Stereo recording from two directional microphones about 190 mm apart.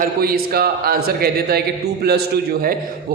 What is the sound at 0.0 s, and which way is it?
A man's voice, 50° right (ahead or behind).